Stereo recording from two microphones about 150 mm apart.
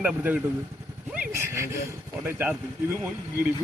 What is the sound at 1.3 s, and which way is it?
Speech, 15° right (ahead or behind).